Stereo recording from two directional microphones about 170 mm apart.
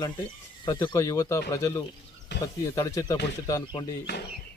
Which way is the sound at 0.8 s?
20° left (ahead or behind).